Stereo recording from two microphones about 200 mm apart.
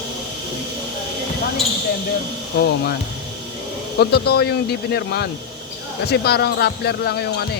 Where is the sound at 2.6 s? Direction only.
55° left (ahead or behind).